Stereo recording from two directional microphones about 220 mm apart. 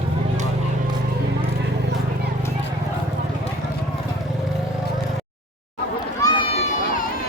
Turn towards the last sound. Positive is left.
turn(degrees=30)  # may be behind; listen again after turning